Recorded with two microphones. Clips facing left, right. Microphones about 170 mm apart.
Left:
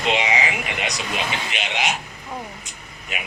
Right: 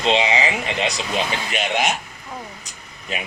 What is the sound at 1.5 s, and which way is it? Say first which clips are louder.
Speech: right 8 dB; 45° right (ahead or behind).